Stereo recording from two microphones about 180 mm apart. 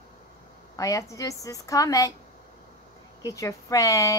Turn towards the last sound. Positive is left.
turn(degrees=20)  # may be behind; listen again after turning